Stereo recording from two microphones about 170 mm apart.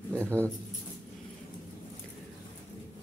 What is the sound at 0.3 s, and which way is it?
Speech, 10° left (ahead or behind).